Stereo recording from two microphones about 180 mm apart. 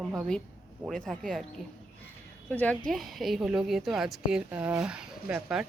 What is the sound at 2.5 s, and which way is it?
A woman's voice, 10° left (ahead or behind).